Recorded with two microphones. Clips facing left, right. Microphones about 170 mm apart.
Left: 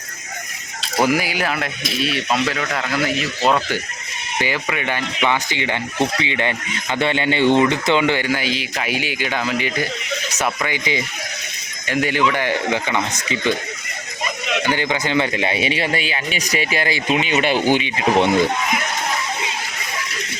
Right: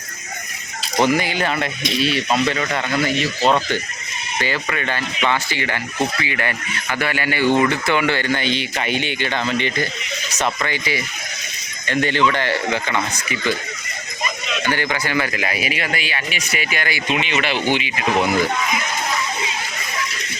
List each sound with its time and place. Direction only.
0.9 s speech: 5° left (ahead or behind)
4.4 s speech: 15° left (ahead or behind)
11.9 s speech: 10° left (ahead or behind)
14.6 s speech: 20° left (ahead or behind); by 17.7 s 40° left (ahead or behind)
17.9 s speech: 30° left (ahead or behind)